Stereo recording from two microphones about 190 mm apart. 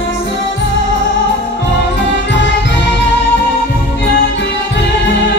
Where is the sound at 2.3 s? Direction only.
70° left (ahead or behind).